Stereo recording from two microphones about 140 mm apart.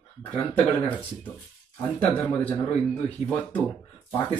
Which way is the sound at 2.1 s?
10° left (ahead or behind).